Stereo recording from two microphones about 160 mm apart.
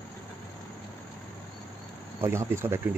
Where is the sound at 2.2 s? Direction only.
15° right (ahead or behind).